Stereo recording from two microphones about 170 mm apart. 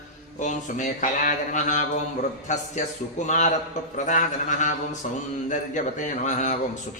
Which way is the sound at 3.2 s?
45° left (ahead or behind).